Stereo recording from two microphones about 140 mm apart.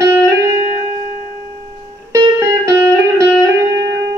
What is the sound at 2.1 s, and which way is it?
Music, 20° right (ahead or behind).